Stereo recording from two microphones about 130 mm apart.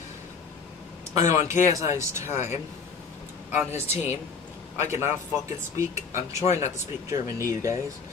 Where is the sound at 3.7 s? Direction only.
55° left (ahead or behind).